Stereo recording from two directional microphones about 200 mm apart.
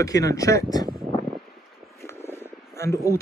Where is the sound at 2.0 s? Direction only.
10° left (ahead or behind).